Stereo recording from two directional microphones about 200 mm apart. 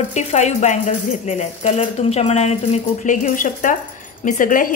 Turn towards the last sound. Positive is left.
turn(degrees=40)  # may be behind; listen again after turning